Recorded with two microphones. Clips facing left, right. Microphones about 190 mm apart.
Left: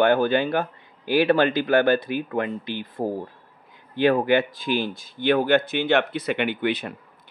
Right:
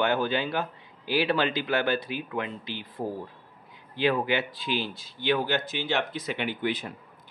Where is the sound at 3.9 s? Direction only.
50° left (ahead or behind); by 6.9 s 70° left (ahead or behind).